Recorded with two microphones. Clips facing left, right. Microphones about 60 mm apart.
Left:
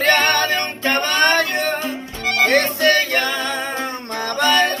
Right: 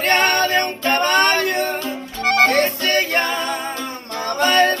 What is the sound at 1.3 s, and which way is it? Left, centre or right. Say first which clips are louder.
Music: left 1 dB; left.